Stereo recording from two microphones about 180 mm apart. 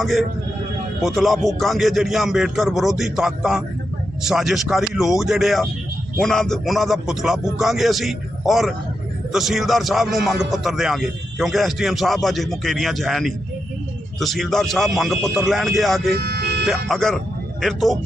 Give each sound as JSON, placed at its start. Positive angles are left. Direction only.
{"t": 0.0, "sound": "speech", "side_deg": 0}
{"t": 16.1, "sound": "vehicle", "side_deg": -65}
{"t": 16.9, "sound": "speech", "side_deg": 0}